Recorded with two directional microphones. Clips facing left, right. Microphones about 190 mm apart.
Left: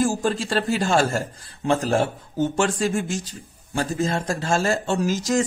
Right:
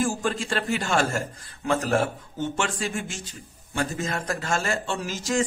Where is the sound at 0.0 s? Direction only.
35° left (ahead or behind).